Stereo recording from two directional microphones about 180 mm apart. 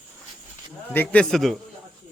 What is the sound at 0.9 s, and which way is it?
Speech, 10° left (ahead or behind).